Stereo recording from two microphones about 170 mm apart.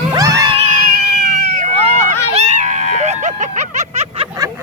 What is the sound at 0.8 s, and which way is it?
Cat, 65° right (ahead or behind).